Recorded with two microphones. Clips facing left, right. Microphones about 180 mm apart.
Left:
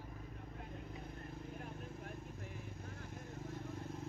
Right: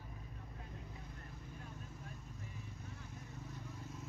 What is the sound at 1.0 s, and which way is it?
Vehicle, 55° left (ahead or behind).